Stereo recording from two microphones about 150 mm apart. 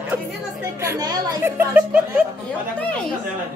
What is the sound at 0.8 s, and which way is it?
Speech, 20° right (ahead or behind).